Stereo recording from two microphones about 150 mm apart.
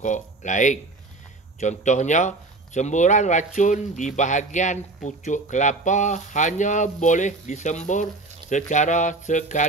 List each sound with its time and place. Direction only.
0.0 s speech: 55° left (ahead or behind)